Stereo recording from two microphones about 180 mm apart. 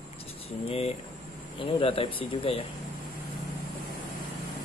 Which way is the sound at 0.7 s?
35° left (ahead or behind).